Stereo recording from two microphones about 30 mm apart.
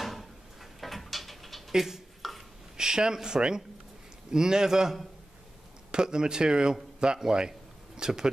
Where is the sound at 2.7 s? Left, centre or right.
Right.